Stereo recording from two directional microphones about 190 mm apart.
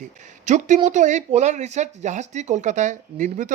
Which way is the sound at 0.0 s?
40° right (ahead or behind).